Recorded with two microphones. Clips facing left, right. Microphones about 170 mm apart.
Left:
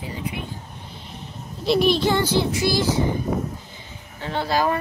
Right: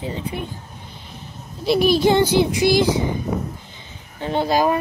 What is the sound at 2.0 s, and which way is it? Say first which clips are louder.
Speech: right 5 dB; 15° right (ahead or behind).